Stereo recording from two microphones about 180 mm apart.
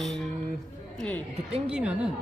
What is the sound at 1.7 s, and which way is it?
Speech, 5° right (ahead or behind).